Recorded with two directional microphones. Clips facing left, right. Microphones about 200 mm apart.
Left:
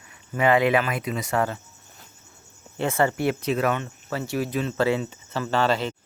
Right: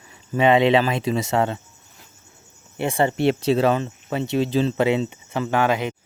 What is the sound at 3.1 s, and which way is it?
Speech, 25° right (ahead or behind).